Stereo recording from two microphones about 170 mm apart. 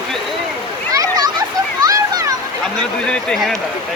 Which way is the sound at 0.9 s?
20° right (ahead or behind).